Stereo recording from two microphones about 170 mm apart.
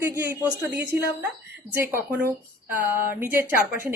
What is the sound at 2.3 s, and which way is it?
Speech, 10° right (ahead or behind).